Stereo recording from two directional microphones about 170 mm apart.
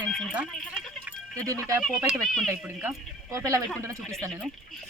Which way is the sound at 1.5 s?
20° right (ahead or behind).